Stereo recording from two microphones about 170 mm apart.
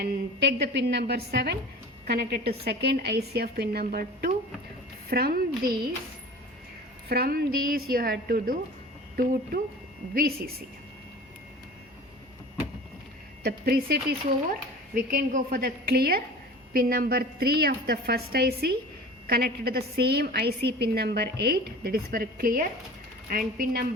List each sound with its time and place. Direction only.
0.0 s a woman's voice: 80° right; by 5.7 s 60° right (ahead or behind)
7.1 s a woman's voice: 65° right (ahead or behind)
13.4 s a woman's voice: 65° right (ahead or behind)